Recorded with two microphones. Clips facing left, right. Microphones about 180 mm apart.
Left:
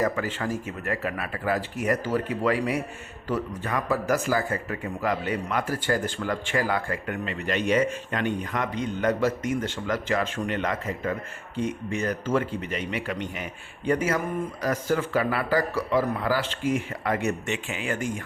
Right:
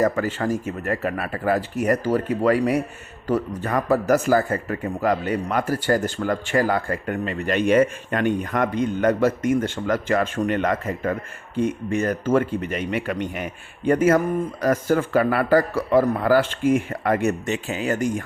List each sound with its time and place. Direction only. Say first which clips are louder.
0.0 s speech: right 5 dB; 45° right (ahead or behind)